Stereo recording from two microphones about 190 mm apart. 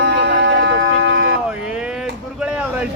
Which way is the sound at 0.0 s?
60° right (ahead or behind).